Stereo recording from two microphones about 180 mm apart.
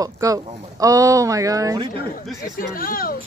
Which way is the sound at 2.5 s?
50° left (ahead or behind).